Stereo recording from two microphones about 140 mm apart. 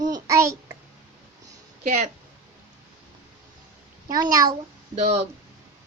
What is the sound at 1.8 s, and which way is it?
Speech, 55° right (ahead or behind).